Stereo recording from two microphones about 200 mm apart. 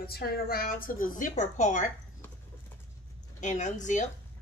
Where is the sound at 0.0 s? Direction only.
50° left (ahead or behind).